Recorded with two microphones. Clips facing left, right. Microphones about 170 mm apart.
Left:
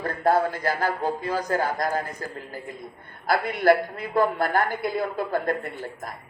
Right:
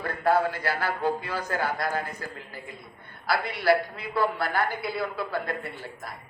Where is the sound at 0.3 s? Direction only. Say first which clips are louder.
Left 2 dB; 45° left (ahead or behind).